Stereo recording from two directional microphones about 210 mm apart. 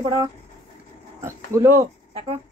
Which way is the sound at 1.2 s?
15° right (ahead or behind).